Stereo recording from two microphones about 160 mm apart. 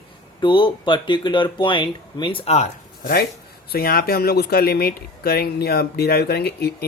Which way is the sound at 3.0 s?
75° left (ahead or behind).